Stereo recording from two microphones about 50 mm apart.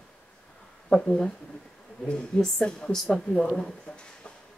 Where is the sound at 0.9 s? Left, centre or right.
Centre.